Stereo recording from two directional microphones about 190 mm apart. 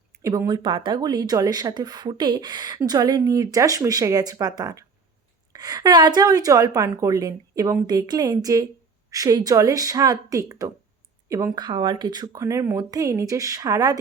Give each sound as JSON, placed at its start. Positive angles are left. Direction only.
{"t": 0.1, "sound": "speech", "side_deg": -15}